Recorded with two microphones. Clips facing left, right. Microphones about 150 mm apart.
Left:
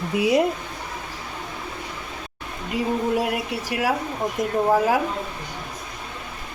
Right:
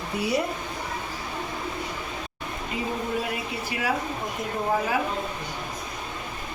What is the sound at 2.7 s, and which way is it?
Speech, 70° left (ahead or behind).